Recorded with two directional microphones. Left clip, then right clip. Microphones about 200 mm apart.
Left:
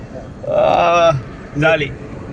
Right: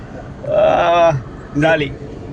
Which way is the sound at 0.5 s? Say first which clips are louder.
Even; 25° left (ahead or behind).